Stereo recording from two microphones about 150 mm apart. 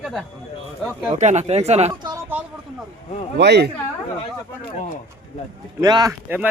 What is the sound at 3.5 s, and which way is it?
Speech, 90° right.